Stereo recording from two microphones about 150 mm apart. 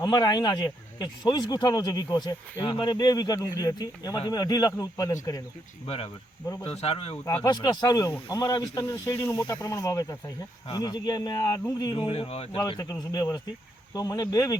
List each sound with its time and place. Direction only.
0.0 s speech: 25° left (ahead or behind)
6.7 s speech: 40° left (ahead or behind)
7.4 s speech: 25° left (ahead or behind)
12.5 s speech: 25° left (ahead or behind)